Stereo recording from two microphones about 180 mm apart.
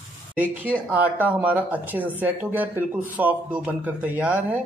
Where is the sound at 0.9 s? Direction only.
10° right (ahead or behind).